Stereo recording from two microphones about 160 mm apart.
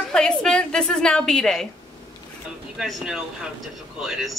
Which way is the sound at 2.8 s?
5° right (ahead or behind).